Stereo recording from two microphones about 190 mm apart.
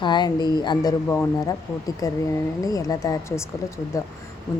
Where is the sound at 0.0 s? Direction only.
25° left (ahead or behind).